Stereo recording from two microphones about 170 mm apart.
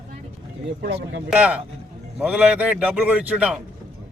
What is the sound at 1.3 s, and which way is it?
A man's voice, 5° right (ahead or behind).